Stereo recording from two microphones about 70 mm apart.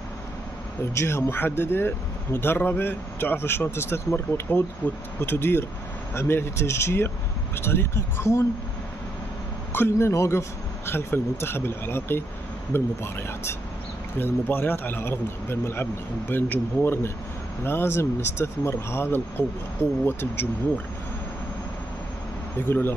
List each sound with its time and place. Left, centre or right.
0.9 s speech: left
9.7 s a sound: left
9.9 s a man's voice: left
22.7 s speech: left